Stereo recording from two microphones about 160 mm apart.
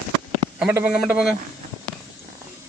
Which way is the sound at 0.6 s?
10° right (ahead or behind).